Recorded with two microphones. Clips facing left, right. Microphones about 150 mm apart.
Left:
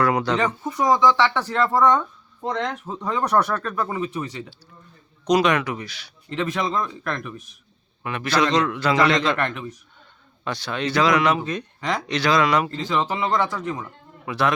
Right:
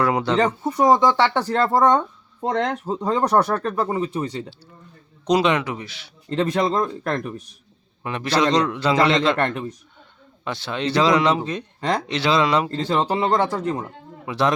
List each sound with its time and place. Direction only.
0.0 s speech: 25° right (ahead or behind)
6.3 s speech: 35° right (ahead or behind)
14.3 s speech: 30° right (ahead or behind)